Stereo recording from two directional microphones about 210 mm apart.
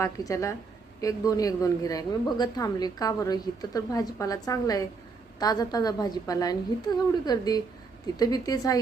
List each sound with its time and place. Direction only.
0.0 s a woman's voice: 15° left (ahead or behind)